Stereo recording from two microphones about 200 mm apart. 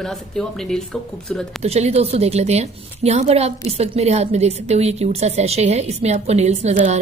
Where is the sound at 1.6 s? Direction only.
35° right (ahead or behind).